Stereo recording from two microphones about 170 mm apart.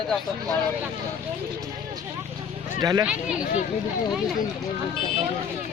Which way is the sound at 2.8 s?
25° right (ahead or behind).